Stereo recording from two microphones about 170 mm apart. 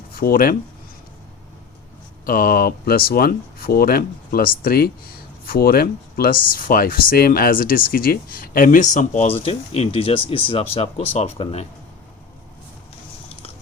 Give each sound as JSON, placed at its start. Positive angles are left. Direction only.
{"t": 0.1, "sound": "speech", "side_deg": 60}
{"t": 2.2, "sound": "speech", "side_deg": 55}